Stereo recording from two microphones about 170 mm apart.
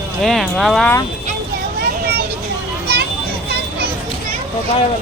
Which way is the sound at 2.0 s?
65° right (ahead or behind).